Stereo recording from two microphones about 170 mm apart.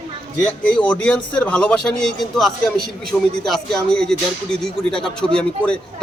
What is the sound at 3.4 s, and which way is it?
A man's voice, 5° left (ahead or behind).